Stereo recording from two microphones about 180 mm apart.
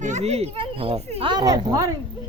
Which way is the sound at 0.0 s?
40° right (ahead or behind).